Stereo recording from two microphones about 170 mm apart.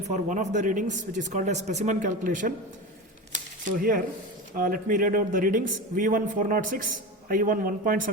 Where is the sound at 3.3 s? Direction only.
55° right (ahead or behind).